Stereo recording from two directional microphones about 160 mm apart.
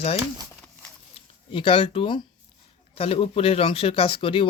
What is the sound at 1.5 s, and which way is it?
Speech, 35° left (ahead or behind).